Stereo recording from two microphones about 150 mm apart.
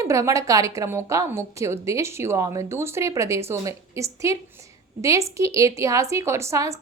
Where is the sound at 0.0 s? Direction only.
20° right (ahead or behind).